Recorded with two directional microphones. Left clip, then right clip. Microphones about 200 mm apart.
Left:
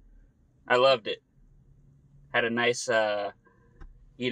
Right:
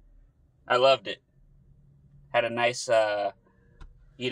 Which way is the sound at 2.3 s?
5° left (ahead or behind).